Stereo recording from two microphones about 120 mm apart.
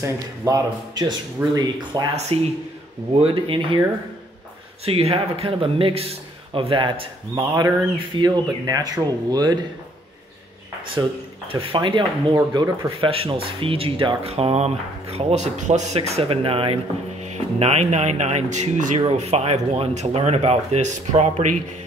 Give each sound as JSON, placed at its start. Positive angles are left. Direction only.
{"t": 0.0, "sound": "speech", "side_deg": -35}
{"t": 2.3, "sound": "a man's voice", "side_deg": -50}
{"t": 4.8, "sound": "a man's voice", "side_deg": -55}
{"t": 11.0, "sound": "speech", "side_deg": -35}
{"t": 11.4, "sound": "a man's voice", "side_deg": -45}
{"t": 17.6, "sound": "speech", "side_deg": -65}
{"t": 19.1, "sound": "speech", "side_deg": -60}